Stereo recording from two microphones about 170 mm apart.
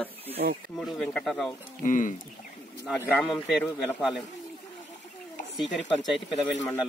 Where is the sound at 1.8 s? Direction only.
50° left (ahead or behind).